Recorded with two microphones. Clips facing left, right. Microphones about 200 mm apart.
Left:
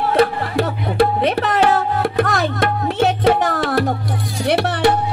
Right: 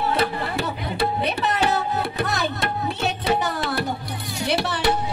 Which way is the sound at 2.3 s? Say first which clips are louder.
Left 6 dB; 90° left.